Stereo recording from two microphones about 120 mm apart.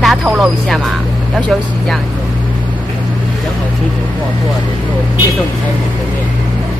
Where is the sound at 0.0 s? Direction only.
Centre (ahead or behind).